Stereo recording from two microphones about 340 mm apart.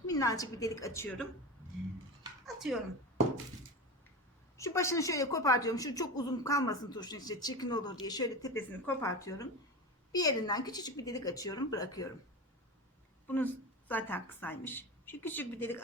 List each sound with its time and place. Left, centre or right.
0.1 s a woman's voice: centre
2.6 s speech: centre
4.5 s a woman's voice: centre
13.2 s a woman's voice: centre